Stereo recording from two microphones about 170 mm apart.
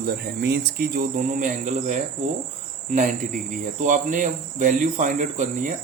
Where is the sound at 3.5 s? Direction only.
50° right (ahead or behind).